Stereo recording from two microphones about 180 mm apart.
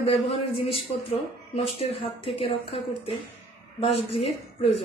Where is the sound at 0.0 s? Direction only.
30° left (ahead or behind).